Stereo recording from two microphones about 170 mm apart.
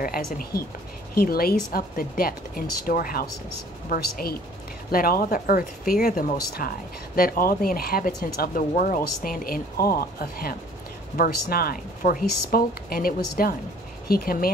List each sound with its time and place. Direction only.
0.0 s speech: 60° left (ahead or behind)